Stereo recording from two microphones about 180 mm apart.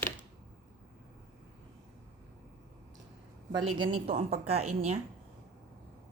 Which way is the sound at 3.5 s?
25° right (ahead or behind).